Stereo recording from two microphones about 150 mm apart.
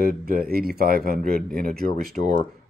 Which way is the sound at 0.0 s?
85° right.